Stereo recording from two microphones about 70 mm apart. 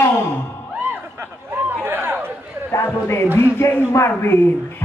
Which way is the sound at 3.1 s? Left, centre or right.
Left.